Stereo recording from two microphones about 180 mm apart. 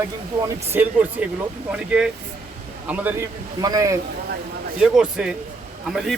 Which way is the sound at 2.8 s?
10° right (ahead or behind).